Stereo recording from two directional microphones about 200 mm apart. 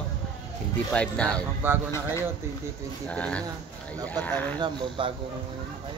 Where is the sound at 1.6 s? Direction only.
10° right (ahead or behind).